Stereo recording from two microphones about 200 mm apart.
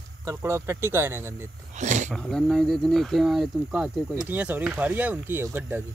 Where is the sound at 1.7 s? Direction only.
35° right (ahead or behind).